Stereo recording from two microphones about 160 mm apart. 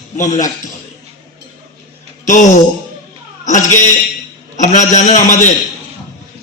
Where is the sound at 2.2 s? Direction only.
50° left (ahead or behind).